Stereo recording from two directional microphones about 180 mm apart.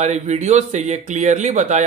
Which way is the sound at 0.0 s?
40° right (ahead or behind).